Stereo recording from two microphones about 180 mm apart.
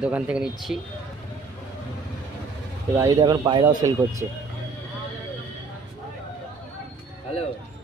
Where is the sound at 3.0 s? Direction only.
20° right (ahead or behind).